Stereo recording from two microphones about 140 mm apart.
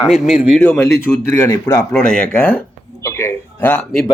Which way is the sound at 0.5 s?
15° left (ahead or behind).